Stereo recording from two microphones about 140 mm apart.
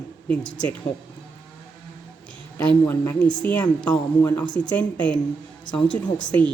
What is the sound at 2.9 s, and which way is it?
A woman's voice, 15° left (ahead or behind).